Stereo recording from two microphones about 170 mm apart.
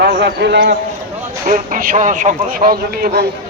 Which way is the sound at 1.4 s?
50° right (ahead or behind).